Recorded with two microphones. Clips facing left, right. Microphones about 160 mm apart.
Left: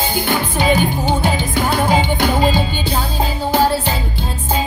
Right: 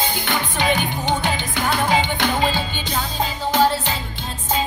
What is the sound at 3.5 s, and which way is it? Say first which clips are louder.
Music: left 2 dB; 10° left (ahead or behind).